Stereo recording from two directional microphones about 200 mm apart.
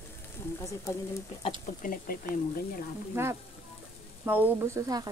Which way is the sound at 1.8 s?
45° left (ahead or behind).